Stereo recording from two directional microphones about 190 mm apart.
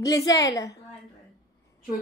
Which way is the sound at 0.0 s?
20° left (ahead or behind).